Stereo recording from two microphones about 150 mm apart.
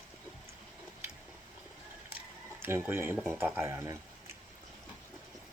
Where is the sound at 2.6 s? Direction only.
15° right (ahead or behind).